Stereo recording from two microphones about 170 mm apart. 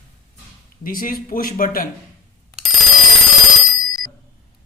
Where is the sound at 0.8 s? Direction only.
55° left (ahead or behind).